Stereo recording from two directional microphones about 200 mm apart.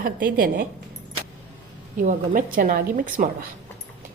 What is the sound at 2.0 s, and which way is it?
Speech, 45° right (ahead or behind).